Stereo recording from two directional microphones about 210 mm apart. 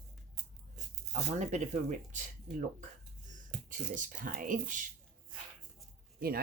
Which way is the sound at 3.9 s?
40° right (ahead or behind).